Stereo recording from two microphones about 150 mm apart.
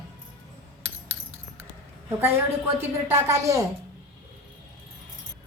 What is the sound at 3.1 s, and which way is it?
Speech, 20° right (ahead or behind).